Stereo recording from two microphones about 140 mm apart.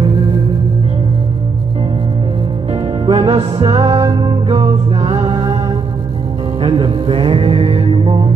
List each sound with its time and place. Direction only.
2.7 s music: 40° right (ahead or behind)
6.6 s music: 45° right (ahead or behind)